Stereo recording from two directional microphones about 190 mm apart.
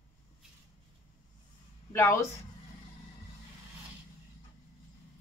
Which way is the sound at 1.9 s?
15° left (ahead or behind).